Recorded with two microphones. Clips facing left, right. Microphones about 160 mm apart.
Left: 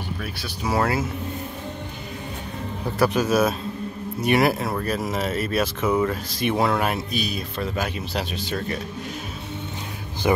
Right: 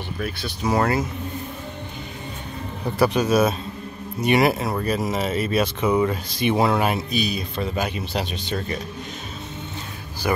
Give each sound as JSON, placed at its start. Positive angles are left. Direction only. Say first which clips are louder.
{"t": 0.2, "sound": "speech", "louder": "right 3 dB", "side_deg": 5}
{"t": 3.0, "sound": "speech", "louder": "right 1 dB", "side_deg": 0}
{"t": 10.2, "sound": "speech", "louder": "left 3 dB", "side_deg": 20}